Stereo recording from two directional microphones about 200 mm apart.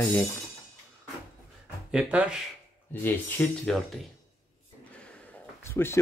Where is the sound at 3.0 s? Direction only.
10° left (ahead or behind).